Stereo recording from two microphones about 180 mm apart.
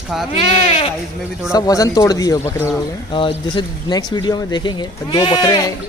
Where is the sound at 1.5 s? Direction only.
20° left (ahead or behind).